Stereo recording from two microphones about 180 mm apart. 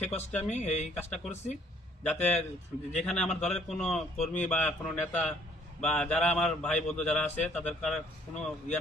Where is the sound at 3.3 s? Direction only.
5° left (ahead or behind).